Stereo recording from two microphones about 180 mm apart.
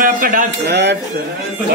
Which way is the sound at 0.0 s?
50° right (ahead or behind).